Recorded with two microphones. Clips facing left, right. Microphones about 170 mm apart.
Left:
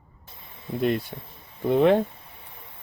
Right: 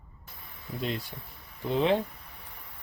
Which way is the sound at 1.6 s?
55° left (ahead or behind).